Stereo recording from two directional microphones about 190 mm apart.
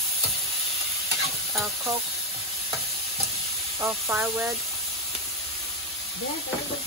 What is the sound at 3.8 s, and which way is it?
Speech, 15° right (ahead or behind).